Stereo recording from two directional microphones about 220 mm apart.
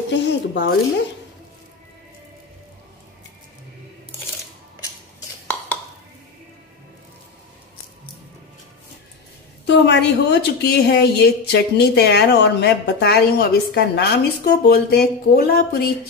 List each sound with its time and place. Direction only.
0.1 s a woman's voice: 50° left (ahead or behind)
9.7 s a woman's voice: 50° left (ahead or behind)